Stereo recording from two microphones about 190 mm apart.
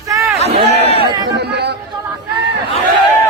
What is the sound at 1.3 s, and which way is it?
Chatter, 60° right (ahead or behind).